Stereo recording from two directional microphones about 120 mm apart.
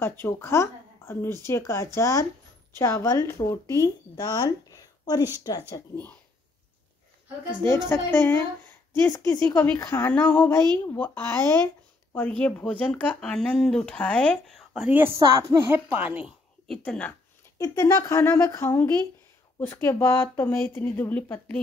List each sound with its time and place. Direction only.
0.0 s a woman's voice: 20° left (ahead or behind)
7.9 s a woman's voice: 20° left (ahead or behind)
14.7 s a woman's voice: 10° right (ahead or behind)
15.9 s a woman's voice: 10° right (ahead or behind)
16.6 s speech: 5° left (ahead or behind)
17.6 s a woman's voice: 25° left (ahead or behind)